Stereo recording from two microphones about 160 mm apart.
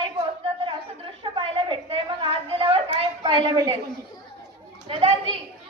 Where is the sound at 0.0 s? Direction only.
35° right (ahead or behind).